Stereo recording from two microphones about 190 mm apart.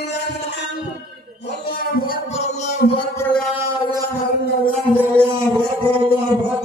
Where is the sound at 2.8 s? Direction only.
50° left (ahead or behind).